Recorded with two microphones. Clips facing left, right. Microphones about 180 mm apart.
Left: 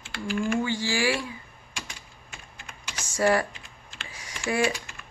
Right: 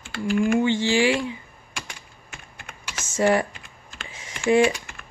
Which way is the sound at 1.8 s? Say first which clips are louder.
Right 2 dB; 60° right (ahead or behind).